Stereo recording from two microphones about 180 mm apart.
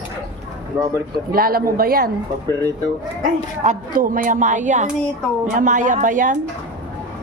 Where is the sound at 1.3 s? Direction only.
55° right (ahead or behind).